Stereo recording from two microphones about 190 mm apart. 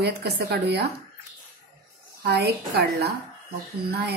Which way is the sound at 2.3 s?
60° right (ahead or behind).